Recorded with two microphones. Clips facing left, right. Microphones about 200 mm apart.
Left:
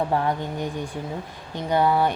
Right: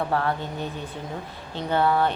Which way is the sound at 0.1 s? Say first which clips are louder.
Left 2 dB; 15° left (ahead or behind).